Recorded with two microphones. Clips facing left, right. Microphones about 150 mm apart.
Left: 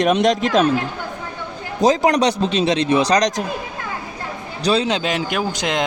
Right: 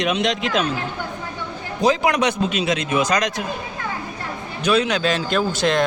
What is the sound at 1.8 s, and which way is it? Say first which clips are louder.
A man's voice: left 3 dB; 40° left (ahead or behind).